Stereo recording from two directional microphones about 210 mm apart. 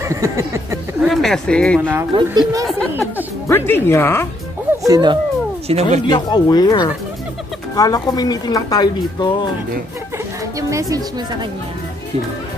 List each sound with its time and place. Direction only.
0.0 s a sound: 15° right (ahead or behind)
1.0 s speech: centre (ahead or behind)
1.8 s a sound: 10° right (ahead or behind)
2.1 s speech: 20° right (ahead or behind)
3.4 s speech: 10° left (ahead or behind)
4.8 s speech: 20° right (ahead or behind)
5.7 s speech: 30° right (ahead or behind)
6.0 s speech: 20° left (ahead or behind)
10.7 s a sound: 15° right (ahead or behind)